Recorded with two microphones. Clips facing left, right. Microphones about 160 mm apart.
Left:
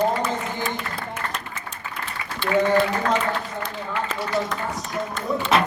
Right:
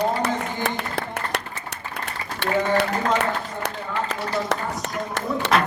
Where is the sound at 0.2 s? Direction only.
70° right (ahead or behind).